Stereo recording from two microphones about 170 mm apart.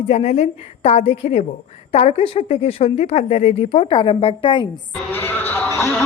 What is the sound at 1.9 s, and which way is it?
A woman's voice, 35° left (ahead or behind).